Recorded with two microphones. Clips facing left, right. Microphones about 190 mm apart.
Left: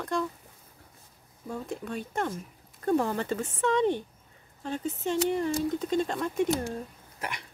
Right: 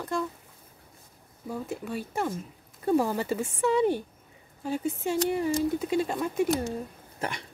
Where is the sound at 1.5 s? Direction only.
5° right (ahead or behind).